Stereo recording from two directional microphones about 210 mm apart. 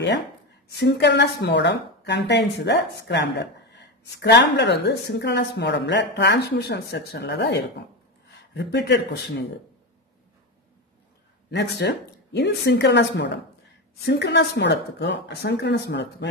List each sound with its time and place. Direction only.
0.7 s speech: 50° left (ahead or behind)
11.5 s speech: 55° left (ahead or behind)